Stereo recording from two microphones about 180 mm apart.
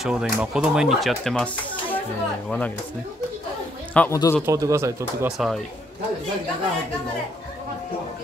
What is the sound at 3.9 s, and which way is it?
Speech, 15° left (ahead or behind).